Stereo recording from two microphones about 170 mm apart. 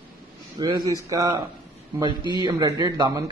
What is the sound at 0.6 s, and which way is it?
A man's voice, 25° right (ahead or behind).